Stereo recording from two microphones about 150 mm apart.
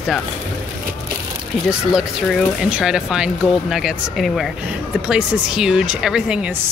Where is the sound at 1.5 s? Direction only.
5° left (ahead or behind).